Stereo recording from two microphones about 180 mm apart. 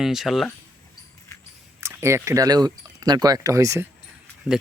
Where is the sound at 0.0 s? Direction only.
Centre (ahead or behind).